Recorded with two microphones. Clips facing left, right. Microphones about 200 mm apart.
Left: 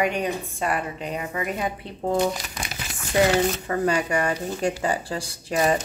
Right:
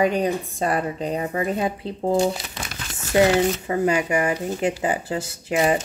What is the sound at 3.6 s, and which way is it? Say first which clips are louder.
A woman's voice: right 2 dB; 20° right (ahead or behind).